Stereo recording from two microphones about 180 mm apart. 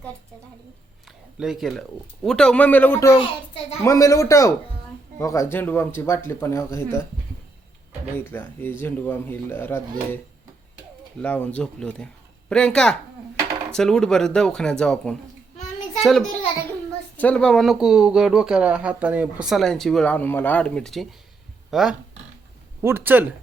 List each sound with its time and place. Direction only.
1.0 s a sound: centre (ahead or behind)
2.2 s speech: 5° left (ahead or behind)
8.1 s speech: 10° left (ahead or behind)
11.2 s speech: 5° left (ahead or behind)
22.8 s speech: 15° right (ahead or behind)